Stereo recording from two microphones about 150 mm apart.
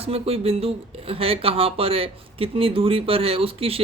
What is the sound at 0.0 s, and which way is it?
Speech, 40° right (ahead or behind).